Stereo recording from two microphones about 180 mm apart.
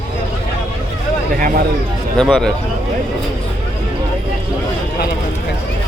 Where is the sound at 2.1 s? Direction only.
5° left (ahead or behind).